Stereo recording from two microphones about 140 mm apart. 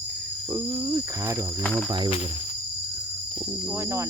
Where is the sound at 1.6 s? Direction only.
5° left (ahead or behind).